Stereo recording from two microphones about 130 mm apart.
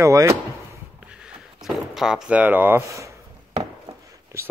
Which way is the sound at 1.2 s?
5° right (ahead or behind).